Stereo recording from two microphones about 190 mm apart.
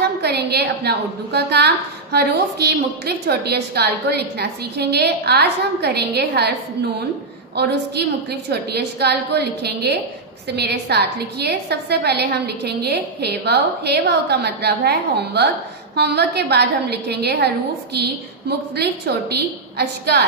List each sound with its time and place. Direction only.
0.2 s a woman's voice: 60° right (ahead or behind)
7.5 s a woman's voice: 60° right (ahead or behind)
18.8 s a woman's voice: 60° right (ahead or behind)